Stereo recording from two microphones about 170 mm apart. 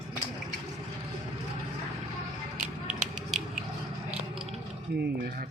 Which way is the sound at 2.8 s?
5° right (ahead or behind).